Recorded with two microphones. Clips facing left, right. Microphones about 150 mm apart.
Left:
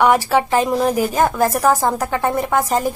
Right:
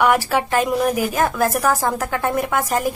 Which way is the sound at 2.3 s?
5° right (ahead or behind).